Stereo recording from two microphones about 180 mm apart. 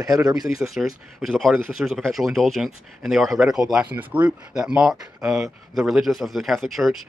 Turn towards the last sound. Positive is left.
turn(degrees=0)  # may be behind; listen again after turning